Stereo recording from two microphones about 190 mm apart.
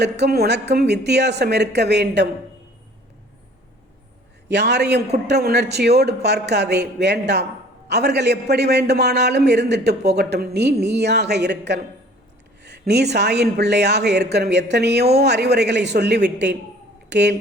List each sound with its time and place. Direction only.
0.0 s a man's voice: 60° right (ahead or behind)
4.4 s a man's voice: 65° right (ahead or behind)